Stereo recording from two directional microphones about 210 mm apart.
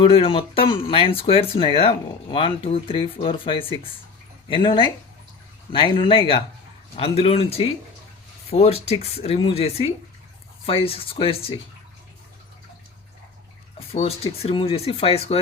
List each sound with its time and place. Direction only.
0.0 s speech: 25° left (ahead or behind)
13.7 s speech: 30° left (ahead or behind)